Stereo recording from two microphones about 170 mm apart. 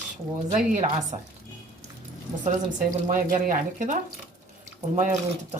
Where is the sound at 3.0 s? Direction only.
50° right (ahead or behind).